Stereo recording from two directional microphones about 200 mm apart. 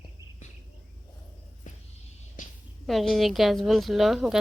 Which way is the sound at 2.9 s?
Centre (ahead or behind).